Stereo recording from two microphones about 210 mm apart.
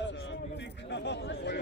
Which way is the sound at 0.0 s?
60° left (ahead or behind).